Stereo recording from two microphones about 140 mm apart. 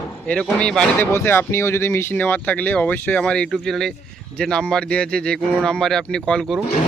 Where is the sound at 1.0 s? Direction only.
15° left (ahead or behind).